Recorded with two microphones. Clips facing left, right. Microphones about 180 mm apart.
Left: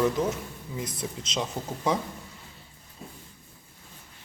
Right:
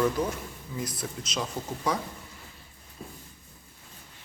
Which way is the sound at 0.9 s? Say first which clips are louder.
Left 1 dB; 25° left (ahead or behind).